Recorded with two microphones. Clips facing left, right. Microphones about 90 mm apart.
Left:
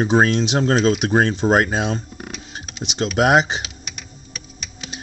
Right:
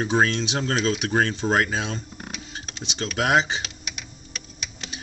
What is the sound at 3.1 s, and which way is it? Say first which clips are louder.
Speech: left 5 dB; 20° left (ahead or behind).